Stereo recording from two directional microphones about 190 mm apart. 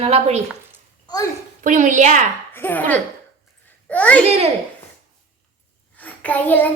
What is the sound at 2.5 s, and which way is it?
Child singing, 10° left (ahead or behind).